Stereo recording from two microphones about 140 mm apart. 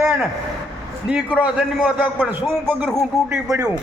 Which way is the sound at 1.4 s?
10° right (ahead or behind).